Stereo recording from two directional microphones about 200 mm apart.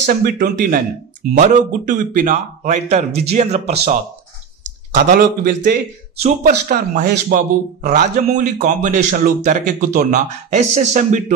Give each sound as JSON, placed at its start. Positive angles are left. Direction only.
{"t": 0.0, "sound": "a man's voice", "side_deg": -45}
{"t": 4.9, "sound": "a man's voice", "side_deg": -40}